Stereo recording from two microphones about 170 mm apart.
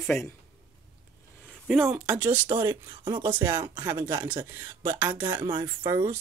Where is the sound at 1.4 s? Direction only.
Centre (ahead or behind).